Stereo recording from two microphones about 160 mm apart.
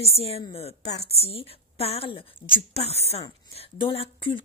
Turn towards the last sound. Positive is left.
turn(degrees=35)  # may be behind; listen again after turning